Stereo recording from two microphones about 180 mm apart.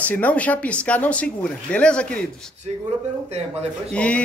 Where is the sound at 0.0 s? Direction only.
10° left (ahead or behind).